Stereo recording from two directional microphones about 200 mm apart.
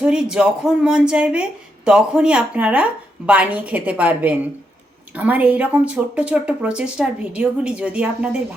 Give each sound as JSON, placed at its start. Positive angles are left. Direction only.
{"t": 0.0, "sound": "a woman's voice", "side_deg": -5}